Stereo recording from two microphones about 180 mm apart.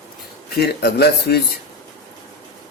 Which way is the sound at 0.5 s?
60° left (ahead or behind).